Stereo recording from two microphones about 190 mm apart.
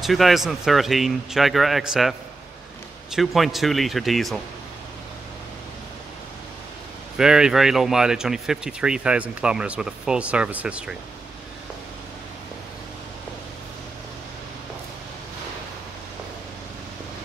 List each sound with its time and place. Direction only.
0.0 s speech: centre (ahead or behind)
7.2 s speech: 5° right (ahead or behind)